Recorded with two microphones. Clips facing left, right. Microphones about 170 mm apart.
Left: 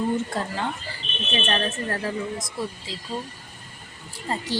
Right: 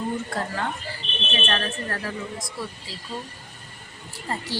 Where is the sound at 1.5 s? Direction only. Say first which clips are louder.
Left 3 dB; 25° left (ahead or behind).